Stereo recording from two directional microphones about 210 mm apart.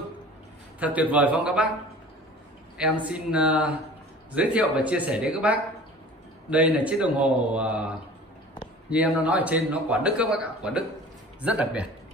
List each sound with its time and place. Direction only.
0.7 s a man's voice: 5° right (ahead or behind)
2.8 s a man's voice: 5° right (ahead or behind)
8.9 s a man's voice: 5° right (ahead or behind)